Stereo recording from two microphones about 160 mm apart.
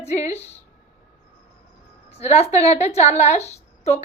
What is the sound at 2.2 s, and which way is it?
A woman's voice, 40° left (ahead or behind).